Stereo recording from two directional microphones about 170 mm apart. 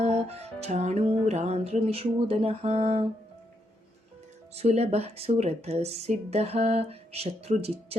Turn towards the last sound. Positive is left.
turn(degrees=-35)  # may be behind; listen again after turning